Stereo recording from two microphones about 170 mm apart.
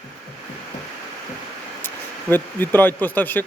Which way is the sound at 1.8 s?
10° left (ahead or behind).